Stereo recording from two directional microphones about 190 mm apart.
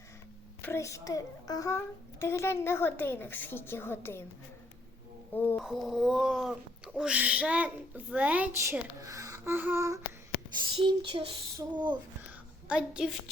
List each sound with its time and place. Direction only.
0.6 s a child's voice: 15° left (ahead or behind)
5.3 s a child's voice: 10° left (ahead or behind)
5.5 s speech: centre (ahead or behind)
10.8 s child singing: 30° right (ahead or behind)
12.6 s a woman's voice: 5° right (ahead or behind)